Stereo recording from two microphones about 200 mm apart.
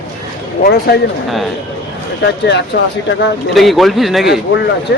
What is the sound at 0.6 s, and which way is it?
Speech, 55° left (ahead or behind).